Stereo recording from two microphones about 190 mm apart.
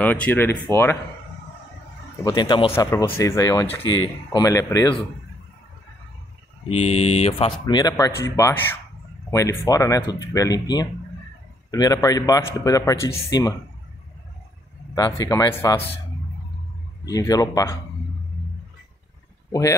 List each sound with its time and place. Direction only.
0.0 s speech: 10° left (ahead or behind)
2.2 s a man's voice: 20° left (ahead or behind)
3.8 s speech: 90° left
4.3 s speech: 20° left (ahead or behind)
6.8 s speech: 35° left (ahead or behind)
7.6 s a man's voice: 20° left (ahead or behind)
15.0 s speech: 20° left (ahead or behind)
17.0 s speech: 20° left (ahead or behind)